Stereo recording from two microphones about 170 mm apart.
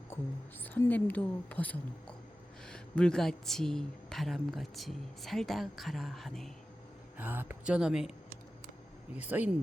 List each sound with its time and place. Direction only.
0.1 s whispering: 15° left (ahead or behind)
0.6 s a woman's voice: 10° left (ahead or behind)
7.2 s speech: 10° right (ahead or behind)
9.2 s speech: 10° right (ahead or behind)